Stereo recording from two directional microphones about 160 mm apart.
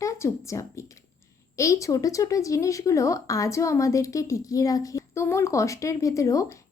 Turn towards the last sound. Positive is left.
turn(degrees=20)  # may be behind; listen again after turning